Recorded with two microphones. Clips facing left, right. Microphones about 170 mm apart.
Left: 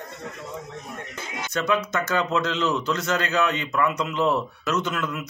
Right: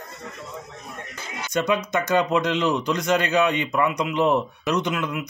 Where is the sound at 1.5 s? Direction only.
15° right (ahead or behind).